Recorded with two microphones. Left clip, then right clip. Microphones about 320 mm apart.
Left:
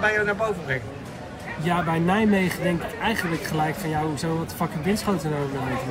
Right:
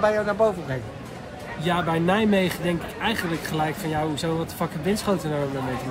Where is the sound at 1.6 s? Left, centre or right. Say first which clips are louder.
Right 1 dB; centre.